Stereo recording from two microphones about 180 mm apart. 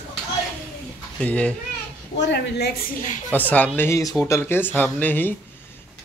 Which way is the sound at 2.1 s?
80° left.